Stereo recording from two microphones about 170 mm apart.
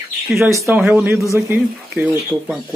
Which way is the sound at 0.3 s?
15° right (ahead or behind).